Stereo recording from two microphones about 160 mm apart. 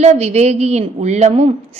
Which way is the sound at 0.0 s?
40° right (ahead or behind).